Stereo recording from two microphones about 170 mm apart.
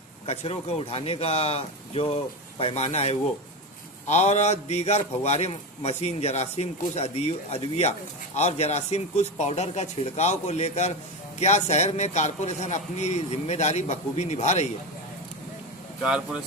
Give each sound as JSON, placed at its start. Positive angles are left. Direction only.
{"t": 0.3, "sound": "speech", "side_deg": 40}
{"t": 16.0, "sound": "speech", "side_deg": -5}